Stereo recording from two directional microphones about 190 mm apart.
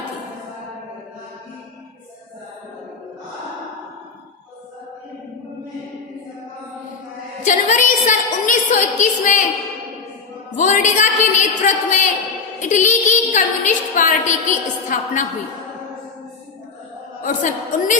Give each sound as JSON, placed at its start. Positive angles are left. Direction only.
{"t": 7.4, "sound": "a woman's voice", "side_deg": 40}
{"t": 10.6, "sound": "a woman's voice", "side_deg": 40}
{"t": 17.2, "sound": "a woman's voice", "side_deg": 40}